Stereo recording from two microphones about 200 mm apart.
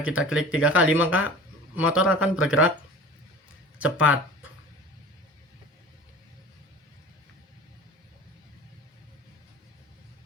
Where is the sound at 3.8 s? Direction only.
90° left.